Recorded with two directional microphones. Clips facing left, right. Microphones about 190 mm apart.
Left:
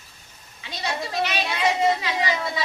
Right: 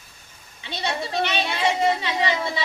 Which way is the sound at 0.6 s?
25° right (ahead or behind).